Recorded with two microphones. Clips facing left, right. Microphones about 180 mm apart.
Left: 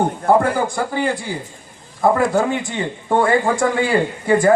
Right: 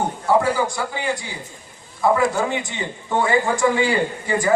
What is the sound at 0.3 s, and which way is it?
A man's voice, 55° left (ahead or behind).